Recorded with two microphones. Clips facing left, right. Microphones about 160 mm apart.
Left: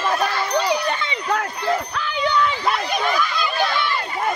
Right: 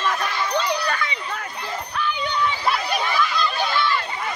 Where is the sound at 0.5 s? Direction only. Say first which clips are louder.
Left 3 dB; 20° left (ahead or behind).